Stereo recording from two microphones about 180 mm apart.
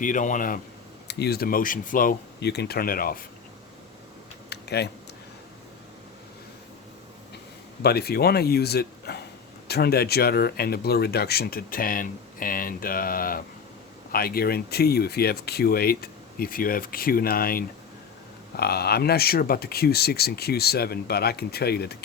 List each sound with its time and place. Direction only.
0.0 s speech: 45° left (ahead or behind)
1.0 s speech: 65° left (ahead or behind)
4.4 s a sound: 65° left (ahead or behind)
7.8 s speech: 65° left (ahead or behind)